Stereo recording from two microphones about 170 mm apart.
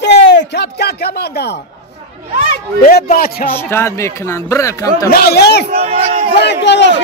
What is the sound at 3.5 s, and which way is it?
Speech, 15° left (ahead or behind).